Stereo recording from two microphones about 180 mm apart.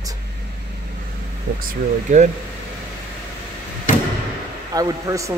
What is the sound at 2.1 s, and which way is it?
Speech, 40° right (ahead or behind).